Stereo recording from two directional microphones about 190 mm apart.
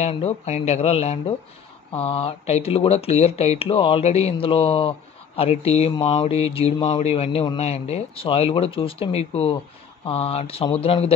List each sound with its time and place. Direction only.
0.0 s speech: 35° left (ahead or behind)